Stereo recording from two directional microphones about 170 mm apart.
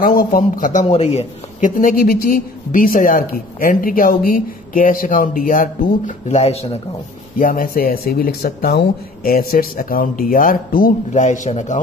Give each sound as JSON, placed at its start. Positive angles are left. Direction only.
{"t": 0.0, "sound": "speech", "side_deg": 55}
{"t": 0.8, "sound": "a woman's voice", "side_deg": 40}
{"t": 7.3, "sound": "a woman's voice", "side_deg": 55}